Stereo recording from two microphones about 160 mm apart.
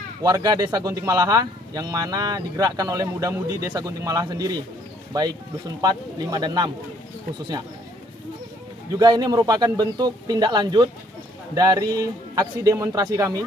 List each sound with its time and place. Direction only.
0.2 s speech: 25° right (ahead or behind)
8.9 s speech: 25° right (ahead or behind)